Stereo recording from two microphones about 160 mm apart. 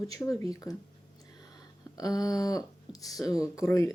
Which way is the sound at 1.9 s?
20° left (ahead or behind).